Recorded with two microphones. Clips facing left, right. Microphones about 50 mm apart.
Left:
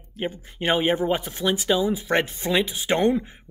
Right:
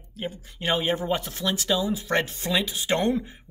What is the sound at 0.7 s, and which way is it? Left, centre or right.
Speech, left.